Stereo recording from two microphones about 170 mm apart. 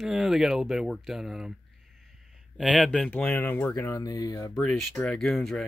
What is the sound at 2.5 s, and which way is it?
Speech, 5° left (ahead or behind).